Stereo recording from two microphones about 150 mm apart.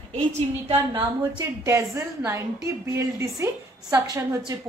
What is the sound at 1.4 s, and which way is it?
A woman's voice, 20° right (ahead or behind).